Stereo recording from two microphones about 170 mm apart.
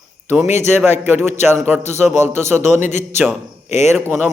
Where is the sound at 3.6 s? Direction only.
40° left (ahead or behind).